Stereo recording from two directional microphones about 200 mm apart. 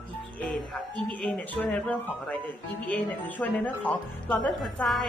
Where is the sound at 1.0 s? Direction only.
5° left (ahead or behind).